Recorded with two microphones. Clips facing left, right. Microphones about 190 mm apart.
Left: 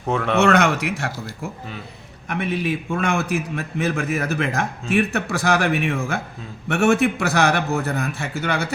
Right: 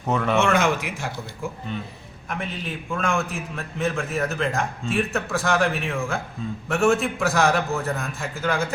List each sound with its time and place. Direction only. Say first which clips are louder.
0.1 s speech: left 1 dB; centre (ahead or behind)
0.4 s a man's voice: left 4 dB; 70° left (ahead or behind)
2.3 s a man's voice: left 7 dB; 75° left (ahead or behind)